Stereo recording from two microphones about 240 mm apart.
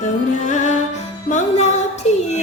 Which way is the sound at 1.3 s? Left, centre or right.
Left.